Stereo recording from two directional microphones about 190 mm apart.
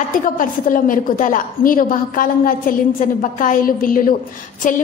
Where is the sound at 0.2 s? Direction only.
45° left (ahead or behind).